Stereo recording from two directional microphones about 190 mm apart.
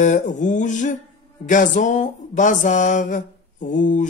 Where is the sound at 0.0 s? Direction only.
40° left (ahead or behind).